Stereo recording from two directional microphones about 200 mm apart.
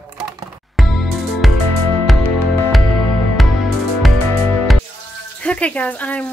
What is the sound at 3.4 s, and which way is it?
Music, centre (ahead or behind).